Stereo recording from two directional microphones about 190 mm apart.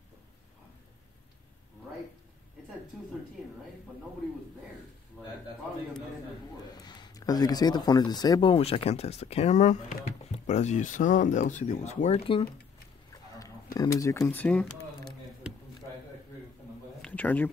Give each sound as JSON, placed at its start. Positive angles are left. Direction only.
{"t": 6.7, "sound": "speech", "side_deg": 20}
{"t": 13.7, "sound": "speech", "side_deg": 15}
{"t": 17.0, "sound": "speech", "side_deg": 10}